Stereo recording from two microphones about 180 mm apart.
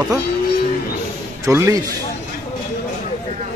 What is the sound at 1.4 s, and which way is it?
Speech, 15° right (ahead or behind).